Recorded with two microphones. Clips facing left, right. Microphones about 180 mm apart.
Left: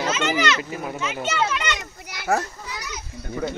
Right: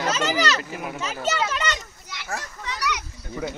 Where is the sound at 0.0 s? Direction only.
40° right (ahead or behind).